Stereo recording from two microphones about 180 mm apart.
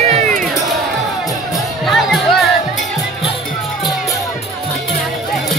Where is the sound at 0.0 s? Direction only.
35° right (ahead or behind).